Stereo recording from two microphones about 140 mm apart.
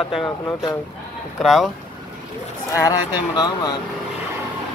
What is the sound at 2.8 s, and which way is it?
Speech, 30° left (ahead or behind).